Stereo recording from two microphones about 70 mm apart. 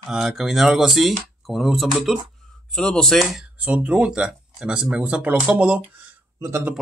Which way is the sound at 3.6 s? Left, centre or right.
Centre.